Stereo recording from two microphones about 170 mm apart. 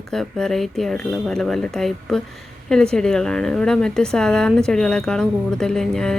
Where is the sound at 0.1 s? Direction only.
5° left (ahead or behind).